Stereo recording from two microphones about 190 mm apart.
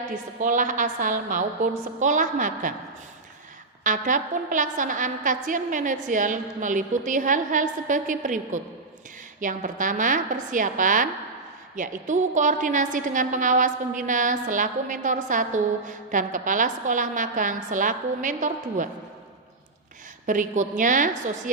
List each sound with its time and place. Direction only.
0.3 s a woman's voice: 45° right (ahead or behind)
3.8 s a woman's voice: 45° right (ahead or behind)
20.2 s a woman's voice: 45° right (ahead or behind)